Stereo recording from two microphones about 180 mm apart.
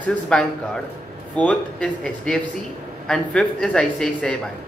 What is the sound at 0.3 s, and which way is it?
Speech, 5° left (ahead or behind).